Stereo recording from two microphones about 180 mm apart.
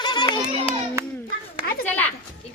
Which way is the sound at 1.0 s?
15° right (ahead or behind).